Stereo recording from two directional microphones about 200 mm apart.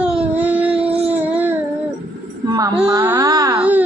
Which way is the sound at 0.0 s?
5° right (ahead or behind).